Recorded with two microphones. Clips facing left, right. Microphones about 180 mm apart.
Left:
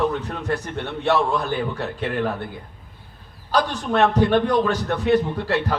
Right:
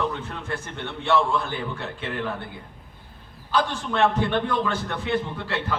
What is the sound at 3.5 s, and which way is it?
A man's voice, 40° left (ahead or behind).